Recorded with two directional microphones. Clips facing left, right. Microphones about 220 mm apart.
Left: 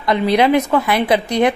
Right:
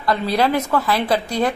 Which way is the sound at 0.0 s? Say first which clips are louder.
Left 4 dB; 15° left (ahead or behind).